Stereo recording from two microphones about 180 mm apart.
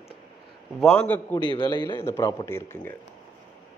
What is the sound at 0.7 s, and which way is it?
Speech, 5° left (ahead or behind).